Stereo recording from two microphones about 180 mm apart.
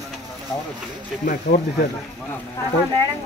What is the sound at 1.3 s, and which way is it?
Speech, 55° left (ahead or behind).